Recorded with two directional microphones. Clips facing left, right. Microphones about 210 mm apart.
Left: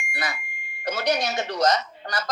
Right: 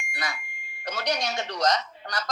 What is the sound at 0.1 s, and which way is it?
Smoke detector, 5° left (ahead or behind).